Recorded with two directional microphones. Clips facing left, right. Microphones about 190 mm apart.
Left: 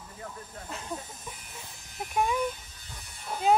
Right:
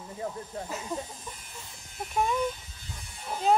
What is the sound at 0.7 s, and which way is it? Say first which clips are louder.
Snake: even; 5° right (ahead or behind).